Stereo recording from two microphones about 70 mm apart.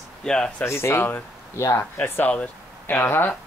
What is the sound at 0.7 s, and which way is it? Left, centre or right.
Speech, left.